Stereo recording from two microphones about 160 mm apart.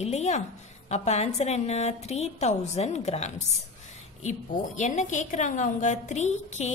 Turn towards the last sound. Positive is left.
turn(degrees=45)  # may be behind; listen again after turning